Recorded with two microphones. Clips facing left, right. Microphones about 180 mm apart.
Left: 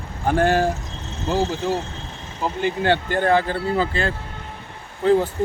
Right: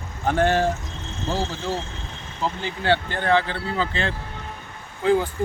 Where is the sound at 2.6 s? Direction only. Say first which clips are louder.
Left 3 dB; 50° left (ahead or behind).